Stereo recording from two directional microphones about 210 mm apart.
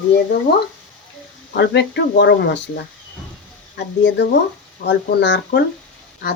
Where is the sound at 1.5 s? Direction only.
55° left (ahead or behind).